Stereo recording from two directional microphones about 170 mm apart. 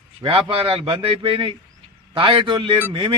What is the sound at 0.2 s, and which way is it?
A man's voice, 30° right (ahead or behind).